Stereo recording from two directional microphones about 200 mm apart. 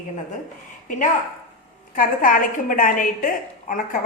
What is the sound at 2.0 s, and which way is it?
A woman's voice, 45° left (ahead or behind).